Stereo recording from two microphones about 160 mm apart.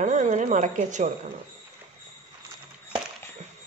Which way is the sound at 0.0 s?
50° right (ahead or behind).